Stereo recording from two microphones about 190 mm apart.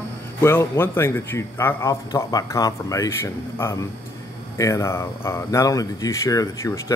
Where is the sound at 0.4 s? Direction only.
10° left (ahead or behind).